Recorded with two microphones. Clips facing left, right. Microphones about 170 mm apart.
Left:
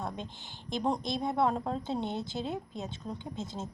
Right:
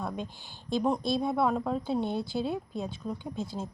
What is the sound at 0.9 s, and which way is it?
Speech, 20° left (ahead or behind).